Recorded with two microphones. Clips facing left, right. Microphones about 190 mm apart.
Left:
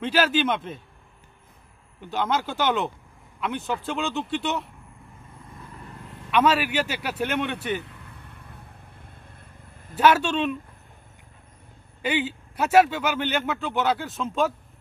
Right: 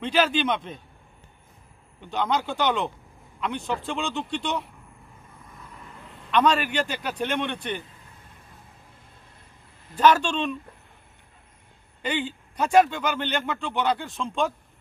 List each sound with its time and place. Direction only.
0.0 s speech: 5° left (ahead or behind)
2.0 s speech: 5° left (ahead or behind)
6.3 s a man's voice: 5° left (ahead or behind)
7.8 s vehicle: 65° left (ahead or behind)
9.9 s a man's voice: 5° left (ahead or behind)
12.0 s speech: 5° left (ahead or behind)